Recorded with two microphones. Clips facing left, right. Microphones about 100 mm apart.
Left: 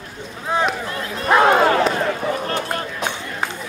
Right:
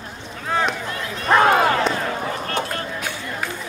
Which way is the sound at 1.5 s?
30° left (ahead or behind).